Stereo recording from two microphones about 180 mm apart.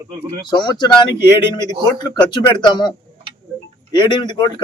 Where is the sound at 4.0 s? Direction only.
25° left (ahead or behind).